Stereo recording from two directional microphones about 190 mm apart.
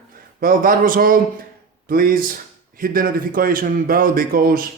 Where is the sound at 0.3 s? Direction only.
50° right (ahead or behind).